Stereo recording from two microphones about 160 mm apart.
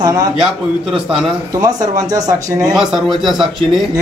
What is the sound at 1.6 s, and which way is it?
A man's voice, 20° right (ahead or behind).